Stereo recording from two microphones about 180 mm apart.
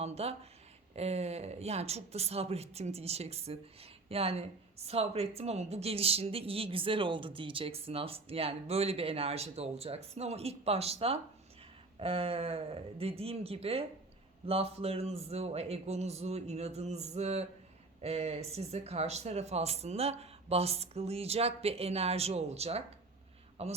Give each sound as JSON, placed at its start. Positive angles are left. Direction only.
{"t": 0.0, "sound": "a woman's voice", "side_deg": -35}